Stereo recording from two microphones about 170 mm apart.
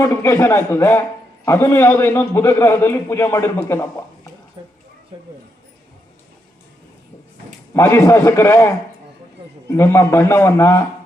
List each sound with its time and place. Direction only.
0.0 s a man's voice: 15° left (ahead or behind)
4.6 s speech: 30° right (ahead or behind)
7.7 s a man's voice: 15° left (ahead or behind)